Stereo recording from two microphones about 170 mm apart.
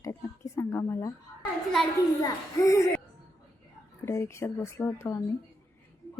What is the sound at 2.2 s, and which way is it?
Speech, 20° left (ahead or behind).